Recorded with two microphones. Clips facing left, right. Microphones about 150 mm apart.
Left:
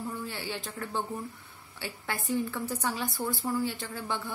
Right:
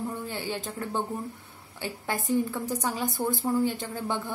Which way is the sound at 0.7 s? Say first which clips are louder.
Right 1 dB; 20° right (ahead or behind).